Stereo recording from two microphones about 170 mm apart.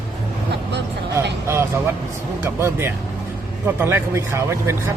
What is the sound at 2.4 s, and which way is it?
A man's voice, 15° right (ahead or behind).